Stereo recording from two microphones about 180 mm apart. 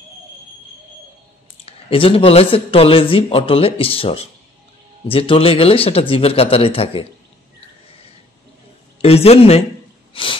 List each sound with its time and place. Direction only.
1.7 s speech: 30° left (ahead or behind)
9.0 s speech: 35° left (ahead or behind)
10.1 s a sound: 30° left (ahead or behind)